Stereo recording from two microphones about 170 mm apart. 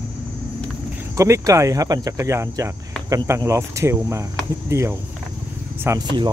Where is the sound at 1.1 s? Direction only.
15° right (ahead or behind).